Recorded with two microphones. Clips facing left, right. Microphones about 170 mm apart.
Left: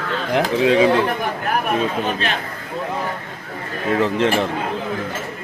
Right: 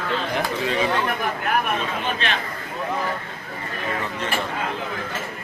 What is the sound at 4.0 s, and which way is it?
Speech, 90° left.